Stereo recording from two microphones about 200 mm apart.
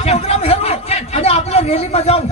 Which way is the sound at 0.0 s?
30° left (ahead or behind).